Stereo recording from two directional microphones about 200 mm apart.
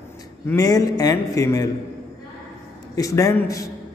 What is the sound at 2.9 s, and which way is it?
Speech, 15° left (ahead or behind).